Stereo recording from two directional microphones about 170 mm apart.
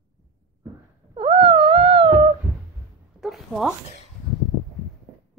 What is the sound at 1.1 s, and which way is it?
Wail, 30° right (ahead or behind).